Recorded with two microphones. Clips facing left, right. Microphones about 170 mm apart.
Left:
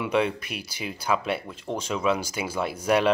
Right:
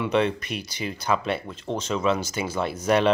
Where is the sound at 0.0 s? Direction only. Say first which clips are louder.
Right 2 dB; 10° left (ahead or behind).